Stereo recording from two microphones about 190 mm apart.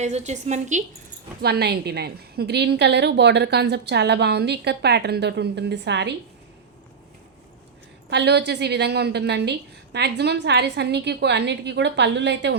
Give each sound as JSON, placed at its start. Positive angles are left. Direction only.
{"t": 0.0, "sound": "a woman's voice", "side_deg": -35}
{"t": 1.4, "sound": "a woman's voice", "side_deg": -60}
{"t": 8.1, "sound": "a woman's voice", "side_deg": -60}